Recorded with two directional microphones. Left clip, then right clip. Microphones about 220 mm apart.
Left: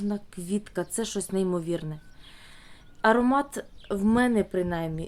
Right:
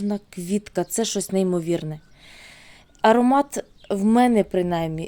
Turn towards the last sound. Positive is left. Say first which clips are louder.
# right 6 dB
turn(degrees=-30)  # may be behind; listen again after turning